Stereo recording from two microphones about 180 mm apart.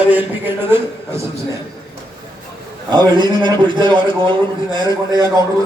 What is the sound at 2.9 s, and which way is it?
A man's voice, 25° right (ahead or behind).